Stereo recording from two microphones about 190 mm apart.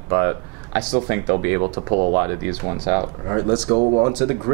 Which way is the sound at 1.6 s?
35° right (ahead or behind).